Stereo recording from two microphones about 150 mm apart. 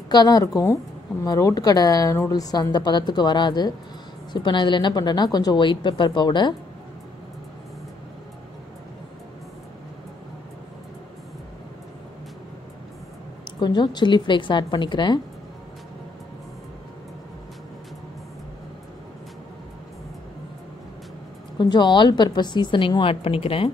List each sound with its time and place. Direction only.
0.1 s a woman's voice: 25° left (ahead or behind)
13.6 s a woman's voice: 30° left (ahead or behind)
21.5 s a woman's voice: 30° left (ahead or behind)